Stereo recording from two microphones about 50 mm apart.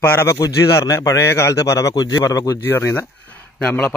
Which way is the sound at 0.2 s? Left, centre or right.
Left.